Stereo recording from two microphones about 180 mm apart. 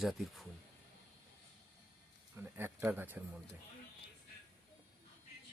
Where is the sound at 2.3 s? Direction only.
10° right (ahead or behind).